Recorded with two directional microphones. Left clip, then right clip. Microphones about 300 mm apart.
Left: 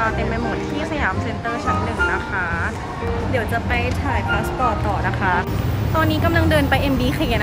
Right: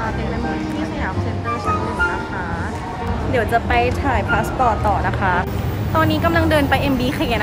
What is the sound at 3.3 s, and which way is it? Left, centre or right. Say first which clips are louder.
Speech: right 7 dB; centre.